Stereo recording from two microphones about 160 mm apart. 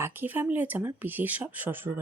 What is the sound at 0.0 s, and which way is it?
Speech, 15° right (ahead or behind).